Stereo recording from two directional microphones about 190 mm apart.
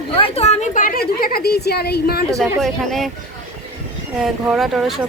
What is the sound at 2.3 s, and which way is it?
Speech, centre (ahead or behind).